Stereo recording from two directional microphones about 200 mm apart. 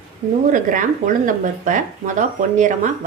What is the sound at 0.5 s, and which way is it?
A woman's voice, 40° right (ahead or behind).